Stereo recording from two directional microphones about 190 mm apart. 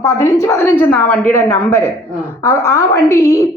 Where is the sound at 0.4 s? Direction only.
15° left (ahead or behind).